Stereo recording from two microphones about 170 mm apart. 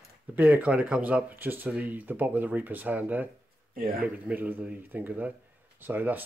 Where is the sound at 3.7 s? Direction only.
60° right (ahead or behind).